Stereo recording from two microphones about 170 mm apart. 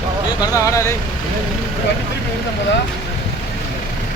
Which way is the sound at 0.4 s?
20° left (ahead or behind).